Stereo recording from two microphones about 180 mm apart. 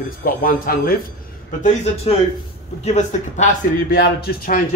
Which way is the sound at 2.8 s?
40° left (ahead or behind).